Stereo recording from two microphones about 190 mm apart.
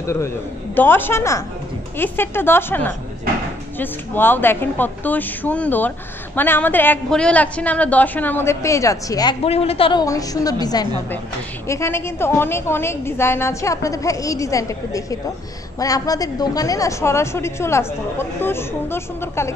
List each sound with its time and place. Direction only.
0.0 s a man's voice: 15° left (ahead or behind)